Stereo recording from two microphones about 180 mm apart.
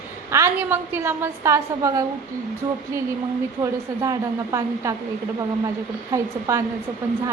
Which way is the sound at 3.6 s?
15° right (ahead or behind).